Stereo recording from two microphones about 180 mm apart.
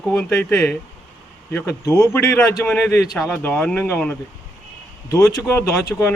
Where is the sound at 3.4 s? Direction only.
10° left (ahead or behind).